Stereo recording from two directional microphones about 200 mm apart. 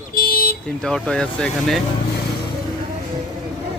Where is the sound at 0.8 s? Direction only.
Centre (ahead or behind).